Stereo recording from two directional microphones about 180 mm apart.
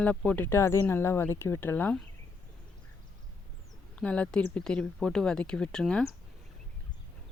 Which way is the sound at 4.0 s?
5° left (ahead or behind).